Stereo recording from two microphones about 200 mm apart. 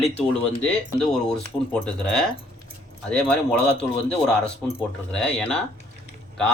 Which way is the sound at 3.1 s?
5° left (ahead or behind).